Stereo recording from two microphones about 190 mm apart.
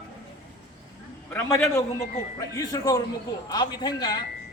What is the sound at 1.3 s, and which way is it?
A man's voice, 10° left (ahead or behind).